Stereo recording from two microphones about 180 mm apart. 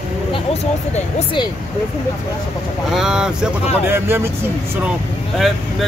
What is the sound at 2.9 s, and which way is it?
Speech, 5° right (ahead or behind).